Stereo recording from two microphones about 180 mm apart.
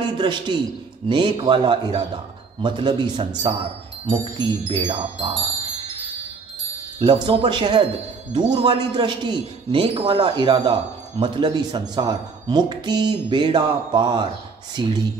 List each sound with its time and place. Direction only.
0.0 s a man's voice: 25° right (ahead or behind)
4.6 s speech: 30° right (ahead or behind)
7.0 s speech: 25° right (ahead or behind)